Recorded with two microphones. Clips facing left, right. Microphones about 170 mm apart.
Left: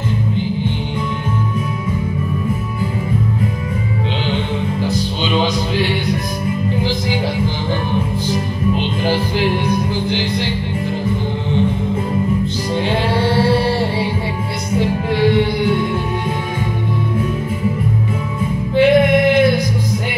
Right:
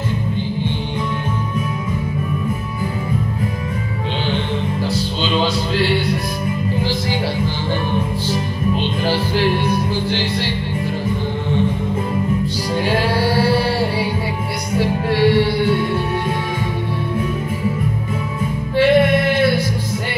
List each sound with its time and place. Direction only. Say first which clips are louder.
4.8 s music: left 1 dB; 15° left (ahead or behind)
8.7 s music: even; 15° left (ahead or behind)
12.9 s music: left 1 dB; 25° left (ahead or behind)
18.8 s music: left 2 dB; 15° left (ahead or behind)